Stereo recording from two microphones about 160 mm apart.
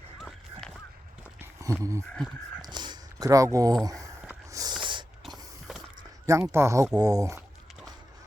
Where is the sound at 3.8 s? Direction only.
20° right (ahead or behind).